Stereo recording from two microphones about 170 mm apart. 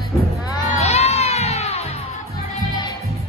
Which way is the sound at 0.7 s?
40° left (ahead or behind).